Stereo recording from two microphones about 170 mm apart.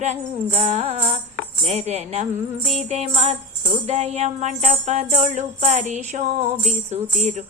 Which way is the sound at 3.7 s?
40° right (ahead or behind).